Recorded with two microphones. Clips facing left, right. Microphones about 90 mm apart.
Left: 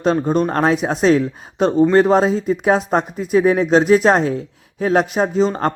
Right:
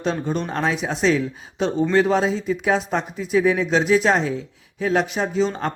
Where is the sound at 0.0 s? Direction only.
45° left (ahead or behind).